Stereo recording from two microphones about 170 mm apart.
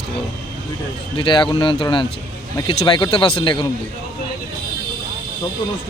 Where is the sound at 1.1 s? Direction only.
30° left (ahead or behind).